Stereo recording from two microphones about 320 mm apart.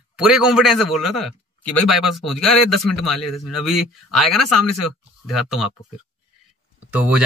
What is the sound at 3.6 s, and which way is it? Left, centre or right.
Speech, centre.